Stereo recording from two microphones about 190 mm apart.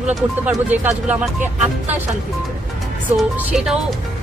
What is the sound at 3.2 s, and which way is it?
Speech, 5° right (ahead or behind).